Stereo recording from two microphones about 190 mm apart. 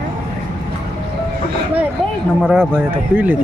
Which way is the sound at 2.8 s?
10° right (ahead or behind).